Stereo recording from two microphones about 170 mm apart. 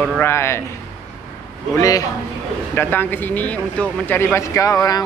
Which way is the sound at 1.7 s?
20° left (ahead or behind).